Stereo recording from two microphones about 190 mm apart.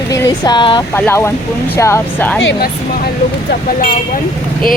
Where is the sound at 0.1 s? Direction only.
20° left (ahead or behind).